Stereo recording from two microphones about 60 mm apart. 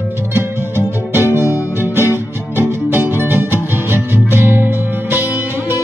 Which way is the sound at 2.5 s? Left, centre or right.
Right.